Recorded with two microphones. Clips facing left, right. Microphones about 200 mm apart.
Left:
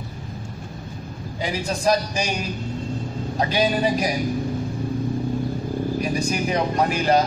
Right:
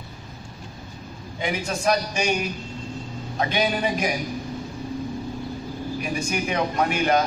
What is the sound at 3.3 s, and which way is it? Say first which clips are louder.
Speech: left 2 dB; 35° left (ahead or behind).